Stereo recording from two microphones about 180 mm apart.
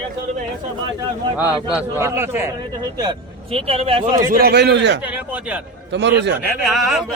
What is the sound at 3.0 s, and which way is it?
A man's voice, 30° right (ahead or behind).